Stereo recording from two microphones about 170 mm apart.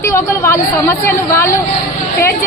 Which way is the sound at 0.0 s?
15° left (ahead or behind).